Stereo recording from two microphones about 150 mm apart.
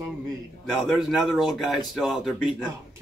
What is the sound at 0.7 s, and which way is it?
A man's voice, 5° right (ahead or behind).